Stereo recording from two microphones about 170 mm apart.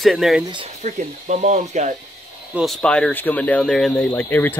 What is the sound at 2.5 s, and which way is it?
Speech, centre (ahead or behind).